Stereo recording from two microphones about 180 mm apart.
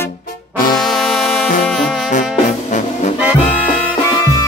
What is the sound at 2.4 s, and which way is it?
Music, 40° left (ahead or behind).